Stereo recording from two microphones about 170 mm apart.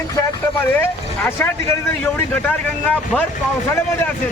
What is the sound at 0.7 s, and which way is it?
Speech, 10° left (ahead or behind).